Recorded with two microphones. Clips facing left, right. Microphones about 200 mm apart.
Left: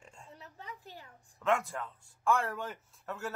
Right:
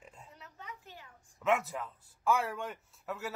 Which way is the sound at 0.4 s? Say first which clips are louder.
Left 1 dB; 35° left (ahead or behind).